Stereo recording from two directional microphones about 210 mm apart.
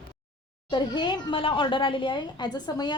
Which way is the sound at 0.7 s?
20° left (ahead or behind).